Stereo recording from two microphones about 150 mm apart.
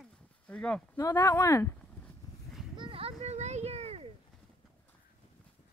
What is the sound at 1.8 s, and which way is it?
Vehicle, 10° left (ahead or behind).